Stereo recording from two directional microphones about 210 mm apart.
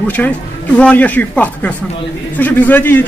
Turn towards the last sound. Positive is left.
turn(degrees=10)  # may be behind; listen again after turning